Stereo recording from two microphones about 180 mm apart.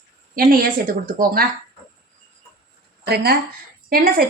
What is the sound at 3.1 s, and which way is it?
A woman's voice, 60° right (ahead or behind).